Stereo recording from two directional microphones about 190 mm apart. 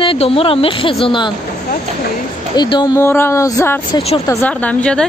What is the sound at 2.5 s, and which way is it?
Speech, 20° left (ahead or behind).